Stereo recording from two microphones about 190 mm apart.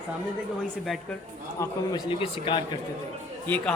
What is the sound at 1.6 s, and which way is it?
A man's voice, 25° left (ahead or behind).